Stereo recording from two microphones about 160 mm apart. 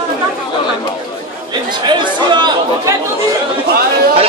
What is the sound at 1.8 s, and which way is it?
Chatter, 25° right (ahead or behind).